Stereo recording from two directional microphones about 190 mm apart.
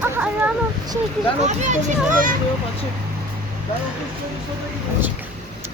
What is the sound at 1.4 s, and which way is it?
Speech, 40° right (ahead or behind).